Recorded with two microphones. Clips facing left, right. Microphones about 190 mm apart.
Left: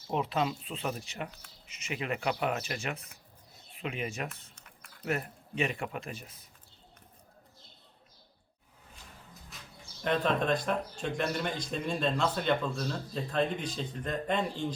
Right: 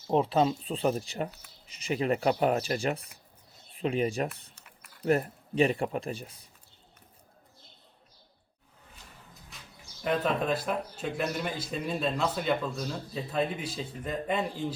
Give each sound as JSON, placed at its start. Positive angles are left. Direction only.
{"t": 0.1, "sound": "speech", "side_deg": -35}
{"t": 9.5, "sound": "bird", "side_deg": 0}
{"t": 10.0, "sound": "speech", "side_deg": -5}